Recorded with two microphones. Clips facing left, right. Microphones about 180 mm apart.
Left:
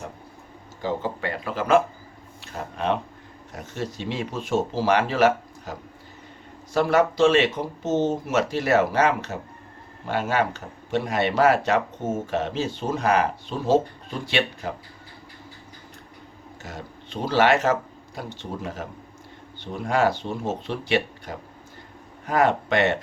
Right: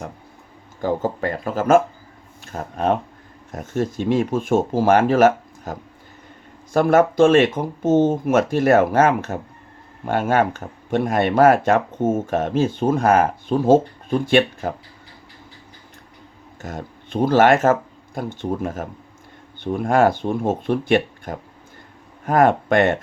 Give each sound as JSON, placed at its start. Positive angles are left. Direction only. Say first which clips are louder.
{"t": 0.8, "sound": "speech", "louder": "right 5 dB", "side_deg": -45}
{"t": 6.7, "sound": "speech", "louder": "right 5 dB", "side_deg": -50}
{"t": 16.6, "sound": "speech", "louder": "right 6 dB", "side_deg": -50}